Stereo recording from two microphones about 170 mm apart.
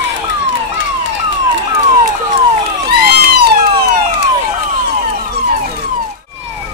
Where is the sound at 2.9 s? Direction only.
70° right (ahead or behind).